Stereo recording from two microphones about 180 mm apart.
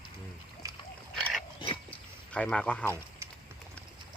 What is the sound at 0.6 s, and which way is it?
Splash, 15° right (ahead or behind).